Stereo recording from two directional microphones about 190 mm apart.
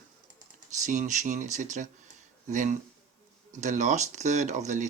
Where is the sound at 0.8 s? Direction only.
40° right (ahead or behind).